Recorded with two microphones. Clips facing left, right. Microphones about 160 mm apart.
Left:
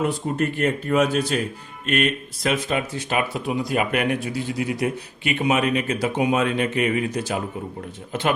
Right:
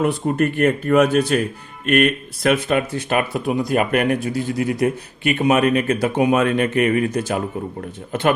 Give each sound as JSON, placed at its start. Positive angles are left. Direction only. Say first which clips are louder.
{"t": 0.0, "sound": "speech", "louder": "right 4 dB", "side_deg": -60}